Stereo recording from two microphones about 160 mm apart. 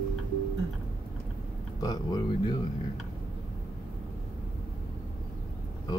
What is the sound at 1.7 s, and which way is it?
Speech, 25° left (ahead or behind).